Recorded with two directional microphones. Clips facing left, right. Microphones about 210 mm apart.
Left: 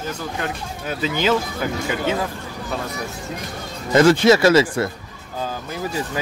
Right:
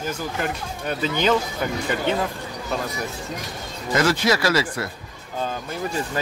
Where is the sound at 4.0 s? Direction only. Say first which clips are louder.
Left 7 dB; 25° left (ahead or behind).